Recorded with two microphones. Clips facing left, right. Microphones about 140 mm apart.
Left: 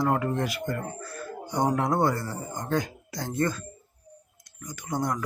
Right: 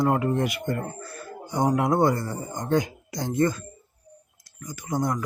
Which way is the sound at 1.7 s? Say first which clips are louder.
Right 5 dB; 15° right (ahead or behind).